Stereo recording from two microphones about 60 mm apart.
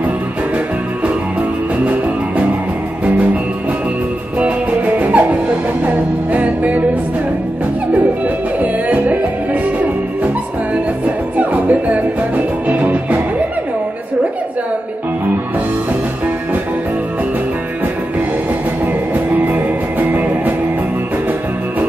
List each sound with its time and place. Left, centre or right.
4.4 s music: right
8.5 s music: right
19.1 s music: right